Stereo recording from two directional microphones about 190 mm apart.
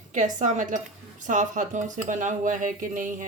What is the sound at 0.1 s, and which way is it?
A woman's voice, 40° right (ahead or behind).